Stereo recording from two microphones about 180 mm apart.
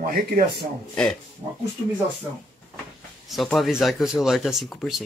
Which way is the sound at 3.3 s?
Centre (ahead or behind).